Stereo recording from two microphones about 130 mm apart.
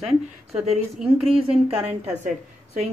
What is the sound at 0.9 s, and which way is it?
Speech, centre (ahead or behind).